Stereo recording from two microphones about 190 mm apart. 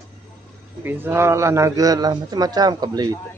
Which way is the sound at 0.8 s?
10° right (ahead or behind).